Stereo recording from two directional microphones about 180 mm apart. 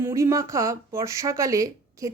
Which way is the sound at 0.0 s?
15° right (ahead or behind).